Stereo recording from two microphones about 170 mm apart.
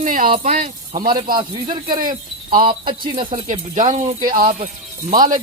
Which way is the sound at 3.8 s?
50° right (ahead or behind).